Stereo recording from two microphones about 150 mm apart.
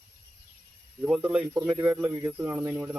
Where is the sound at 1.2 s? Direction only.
10° right (ahead or behind).